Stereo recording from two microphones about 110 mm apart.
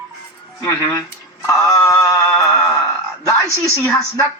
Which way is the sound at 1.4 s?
30° left (ahead or behind).